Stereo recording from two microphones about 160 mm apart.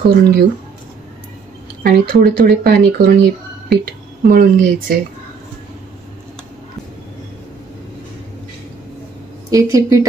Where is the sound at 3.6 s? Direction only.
70° right (ahead or behind).